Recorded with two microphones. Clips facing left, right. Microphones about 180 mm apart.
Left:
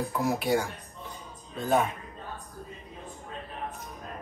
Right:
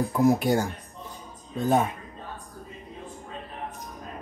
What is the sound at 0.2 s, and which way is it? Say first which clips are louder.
Speech: right 6 dB; 40° right (ahead or behind).